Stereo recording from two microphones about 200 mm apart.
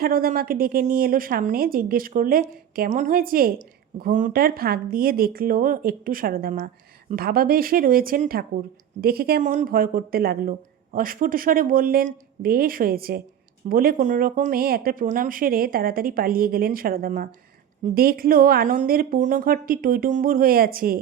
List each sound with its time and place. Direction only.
0.0 s speech: 45° right (ahead or behind)